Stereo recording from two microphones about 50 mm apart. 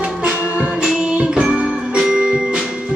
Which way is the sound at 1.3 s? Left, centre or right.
Right.